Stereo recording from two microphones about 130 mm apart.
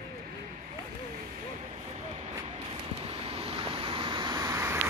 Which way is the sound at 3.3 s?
45° right (ahead or behind).